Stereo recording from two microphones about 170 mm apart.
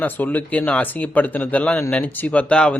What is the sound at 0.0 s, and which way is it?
Speech, 10° left (ahead or behind).